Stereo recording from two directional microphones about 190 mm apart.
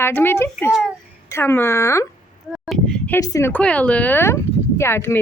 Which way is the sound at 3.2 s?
20° left (ahead or behind).